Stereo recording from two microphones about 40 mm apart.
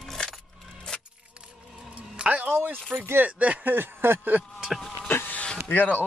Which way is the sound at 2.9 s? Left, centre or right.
Right.